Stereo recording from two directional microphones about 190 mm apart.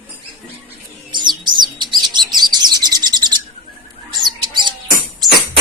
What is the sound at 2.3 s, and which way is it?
Bird, 20° right (ahead or behind).